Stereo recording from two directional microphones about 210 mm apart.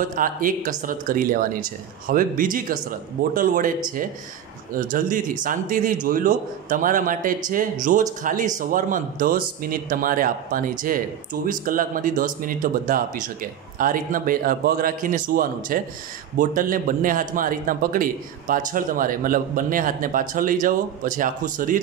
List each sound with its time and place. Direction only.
0.1 s a man's voice: 40° right (ahead or behind)
4.7 s a man's voice: 40° right (ahead or behind)